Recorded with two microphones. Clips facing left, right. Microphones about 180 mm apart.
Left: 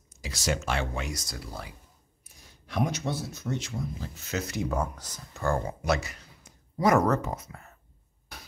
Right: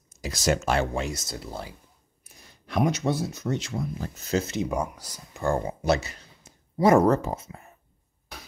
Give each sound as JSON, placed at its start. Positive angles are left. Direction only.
{"t": 0.2, "sound": "speech", "side_deg": -40}
{"t": 1.0, "sound": "speech", "side_deg": -25}
{"t": 2.7, "sound": "speech", "side_deg": -70}
{"t": 4.1, "sound": "speech", "side_deg": -35}